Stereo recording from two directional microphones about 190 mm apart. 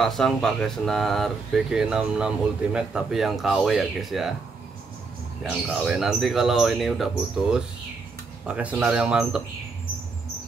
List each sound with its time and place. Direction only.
0.0 s speech: centre (ahead or behind)
5.4 s speech: centre (ahead or behind)